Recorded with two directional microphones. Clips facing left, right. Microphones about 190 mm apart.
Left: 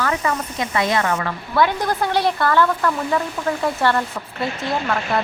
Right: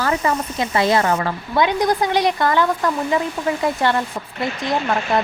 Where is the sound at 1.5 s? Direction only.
15° right (ahead or behind).